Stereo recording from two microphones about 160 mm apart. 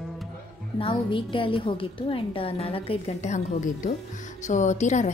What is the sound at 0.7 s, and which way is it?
A woman's voice, 35° left (ahead or behind).